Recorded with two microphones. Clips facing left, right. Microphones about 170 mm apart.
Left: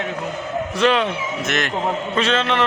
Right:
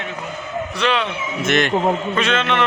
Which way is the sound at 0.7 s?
45° left (ahead or behind).